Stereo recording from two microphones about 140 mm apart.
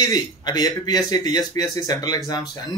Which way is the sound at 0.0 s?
25° left (ahead or behind).